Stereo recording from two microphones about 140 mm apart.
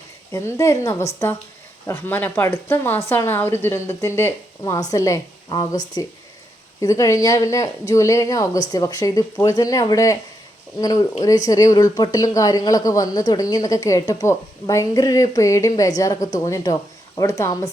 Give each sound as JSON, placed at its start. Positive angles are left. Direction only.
{"t": 0.3, "sound": "a woman's voice", "side_deg": 20}